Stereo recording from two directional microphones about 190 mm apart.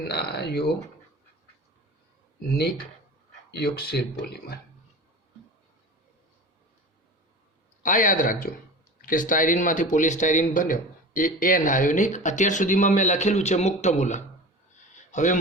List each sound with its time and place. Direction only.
0.1 s speech: 60° left (ahead or behind)
2.5 s speech: 55° left (ahead or behind)
7.8 s speech: 45° left (ahead or behind)